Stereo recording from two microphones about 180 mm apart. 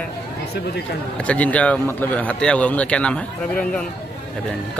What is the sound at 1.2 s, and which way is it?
Speech, 5° left (ahead or behind).